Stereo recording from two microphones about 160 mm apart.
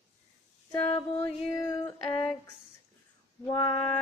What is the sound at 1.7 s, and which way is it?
Music, 25° left (ahead or behind).